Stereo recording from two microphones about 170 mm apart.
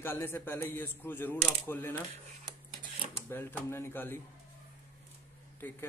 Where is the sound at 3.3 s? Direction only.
10° left (ahead or behind).